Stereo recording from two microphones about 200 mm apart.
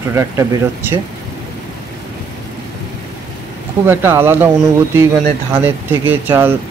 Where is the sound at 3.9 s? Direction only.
10° right (ahead or behind).